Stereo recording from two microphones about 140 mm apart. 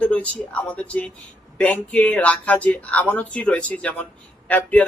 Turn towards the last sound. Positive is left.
turn(degrees=10)  # may be behind; listen again after turning